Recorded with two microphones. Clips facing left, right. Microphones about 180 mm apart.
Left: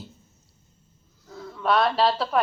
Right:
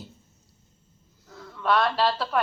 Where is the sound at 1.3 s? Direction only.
35° left (ahead or behind).